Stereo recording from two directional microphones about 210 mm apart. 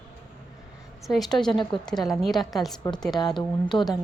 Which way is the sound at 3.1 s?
20° left (ahead or behind).